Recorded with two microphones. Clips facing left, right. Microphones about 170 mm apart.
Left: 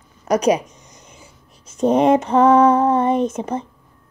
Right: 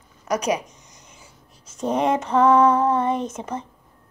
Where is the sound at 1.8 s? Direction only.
20° left (ahead or behind).